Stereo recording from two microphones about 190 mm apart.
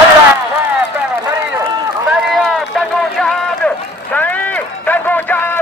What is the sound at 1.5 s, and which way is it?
Run, 15° right (ahead or behind).